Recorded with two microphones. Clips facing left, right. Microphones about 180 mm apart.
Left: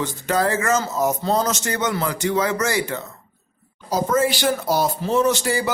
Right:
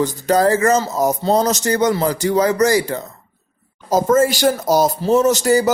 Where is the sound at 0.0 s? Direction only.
40° right (ahead or behind).